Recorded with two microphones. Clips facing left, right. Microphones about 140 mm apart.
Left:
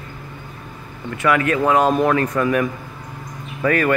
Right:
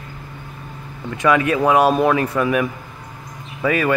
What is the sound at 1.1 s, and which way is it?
Speech, 20° right (ahead or behind).